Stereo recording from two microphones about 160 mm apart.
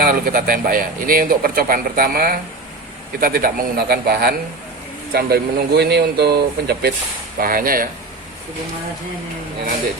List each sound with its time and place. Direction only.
0.0 s speech: 65° right (ahead or behind)
5.1 s speech: 85° right
7.3 s speech: 65° right (ahead or behind)